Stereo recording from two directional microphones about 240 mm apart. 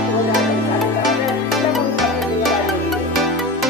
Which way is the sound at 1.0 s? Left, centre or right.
Centre.